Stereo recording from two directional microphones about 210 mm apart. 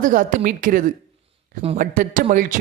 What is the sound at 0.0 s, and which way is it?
Speech, 40° right (ahead or behind).